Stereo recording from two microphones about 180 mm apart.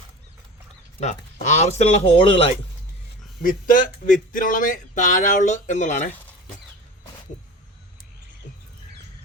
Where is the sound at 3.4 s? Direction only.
50° left (ahead or behind).